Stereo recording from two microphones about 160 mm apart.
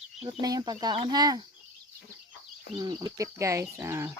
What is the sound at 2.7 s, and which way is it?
Speech, 25° right (ahead or behind).